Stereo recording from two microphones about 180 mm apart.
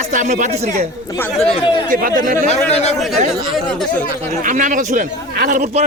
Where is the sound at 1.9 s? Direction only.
50° right (ahead or behind).